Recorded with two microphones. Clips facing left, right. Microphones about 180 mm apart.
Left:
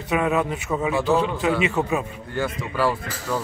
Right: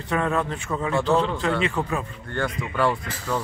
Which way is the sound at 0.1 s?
10° left (ahead or behind).